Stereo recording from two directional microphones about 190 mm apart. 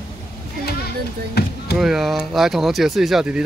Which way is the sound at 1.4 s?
55° left (ahead or behind).